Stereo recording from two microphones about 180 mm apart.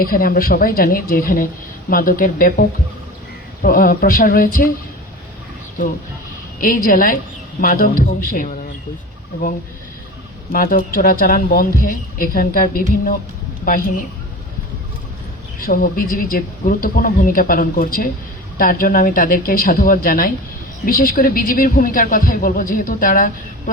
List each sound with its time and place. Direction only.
0.0 s speech: 50° left (ahead or behind)
6.6 s speech: 50° left (ahead or behind)
10.5 s speech: 50° left (ahead or behind)
15.6 s speech: 50° left (ahead or behind)